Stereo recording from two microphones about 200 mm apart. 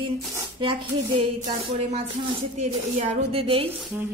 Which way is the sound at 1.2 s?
25° right (ahead or behind).